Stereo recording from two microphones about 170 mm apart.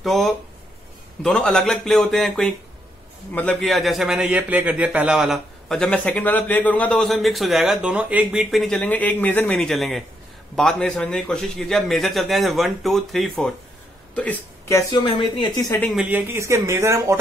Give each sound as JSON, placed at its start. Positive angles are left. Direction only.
{"t": 0.0, "sound": "a man's voice", "side_deg": 0}
{"t": 15.0, "sound": "speech", "side_deg": 30}
{"t": 15.9, "sound": "speech", "side_deg": -5}